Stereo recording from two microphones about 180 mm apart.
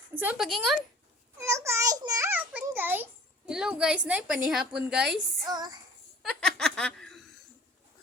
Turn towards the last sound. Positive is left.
turn(degrees=5)  # may be behind; listen again after turning